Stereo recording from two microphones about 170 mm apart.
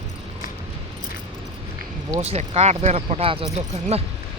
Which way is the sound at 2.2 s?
40° right (ahead or behind).